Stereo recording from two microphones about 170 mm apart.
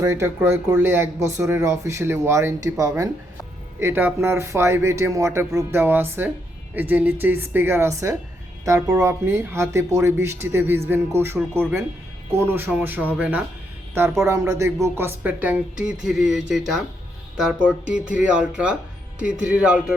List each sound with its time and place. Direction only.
0.0 s speech: 15° right (ahead or behind)